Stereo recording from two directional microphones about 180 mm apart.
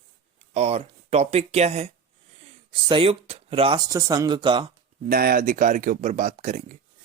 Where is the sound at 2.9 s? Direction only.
30° right (ahead or behind).